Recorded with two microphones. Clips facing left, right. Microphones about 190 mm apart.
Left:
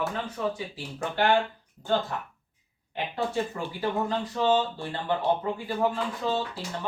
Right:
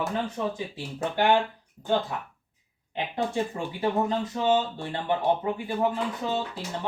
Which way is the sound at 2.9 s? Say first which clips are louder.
Right 1 dB; 20° right (ahead or behind).